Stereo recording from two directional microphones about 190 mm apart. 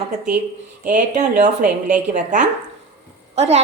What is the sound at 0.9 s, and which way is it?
A woman's voice, 40° right (ahead or behind).